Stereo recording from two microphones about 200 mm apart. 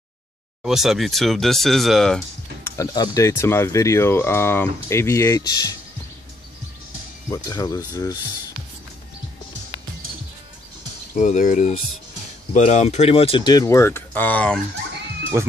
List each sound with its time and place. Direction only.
0.7 s speech: centre (ahead or behind)
2.7 s speech: 20° left (ahead or behind)
7.2 s speech: 15° left (ahead or behind)
11.1 s speech: 40° left (ahead or behind); by 14.6 s 5° left (ahead or behind)
15.3 s speech: 15° right (ahead or behind)